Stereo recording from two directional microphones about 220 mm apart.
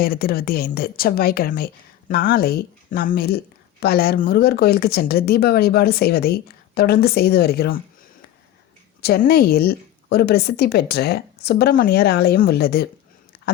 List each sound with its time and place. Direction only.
0.0 s a woman's voice: 45° left (ahead or behind)
9.0 s a woman's voice: 45° left (ahead or behind)
13.3 s a sound: 45° left (ahead or behind)